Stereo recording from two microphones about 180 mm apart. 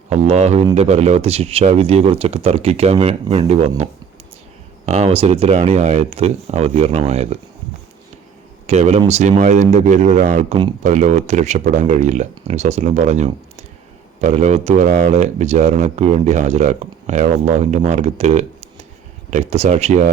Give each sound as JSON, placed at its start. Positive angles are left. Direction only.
{"t": 0.1, "sound": "speech", "side_deg": -40}
{"t": 4.9, "sound": "speech", "side_deg": -35}
{"t": 8.6, "sound": "speech", "side_deg": -40}